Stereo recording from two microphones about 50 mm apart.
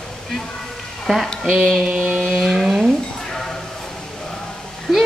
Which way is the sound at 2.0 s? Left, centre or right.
Right.